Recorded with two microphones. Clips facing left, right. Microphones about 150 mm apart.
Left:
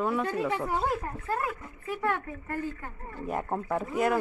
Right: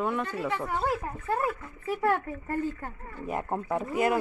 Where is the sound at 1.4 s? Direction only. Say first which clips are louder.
Right 3 dB; 30° right (ahead or behind).